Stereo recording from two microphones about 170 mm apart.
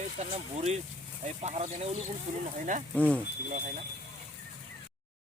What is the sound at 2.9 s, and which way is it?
Speech, 10° left (ahead or behind).